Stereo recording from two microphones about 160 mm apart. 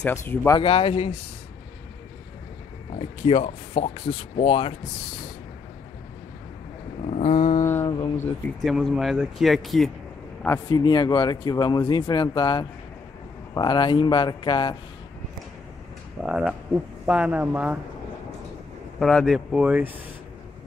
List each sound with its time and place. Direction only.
0.0 s speech: 15° left (ahead or behind)
0.6 s speech: 35° left (ahead or behind)
3.0 s speech: 35° left (ahead or behind)
7.1 s a sound: 50° left (ahead or behind)
7.6 s mantra: 15° left (ahead or behind)
8.5 s speech: centre (ahead or behind)
10.7 s speech: 25° left (ahead or behind)
16.3 s speech: 5° right (ahead or behind)
18.9 s speech: centre (ahead or behind)